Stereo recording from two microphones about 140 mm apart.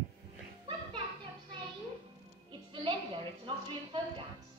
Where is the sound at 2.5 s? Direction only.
35° right (ahead or behind).